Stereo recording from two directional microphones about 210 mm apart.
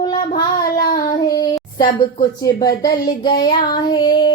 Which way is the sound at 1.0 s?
15° left (ahead or behind).